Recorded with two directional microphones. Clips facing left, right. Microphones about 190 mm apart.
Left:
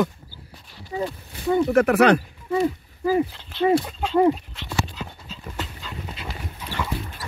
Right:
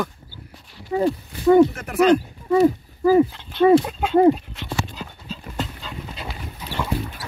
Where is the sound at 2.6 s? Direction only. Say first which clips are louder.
Right 7 dB; 40° right (ahead or behind).